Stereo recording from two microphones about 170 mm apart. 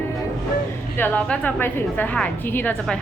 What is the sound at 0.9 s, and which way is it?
A woman's voice, 10° left (ahead or behind).